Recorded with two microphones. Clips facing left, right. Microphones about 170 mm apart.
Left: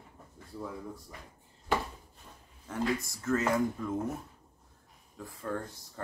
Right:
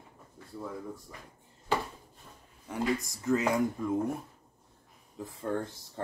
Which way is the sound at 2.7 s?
20° right (ahead or behind).